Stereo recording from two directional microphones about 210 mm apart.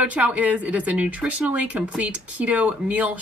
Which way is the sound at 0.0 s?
5° right (ahead or behind).